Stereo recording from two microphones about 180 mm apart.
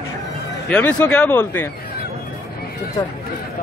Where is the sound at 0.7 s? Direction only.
10° left (ahead or behind).